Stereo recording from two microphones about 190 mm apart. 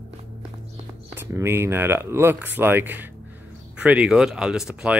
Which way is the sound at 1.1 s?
15° right (ahead or behind).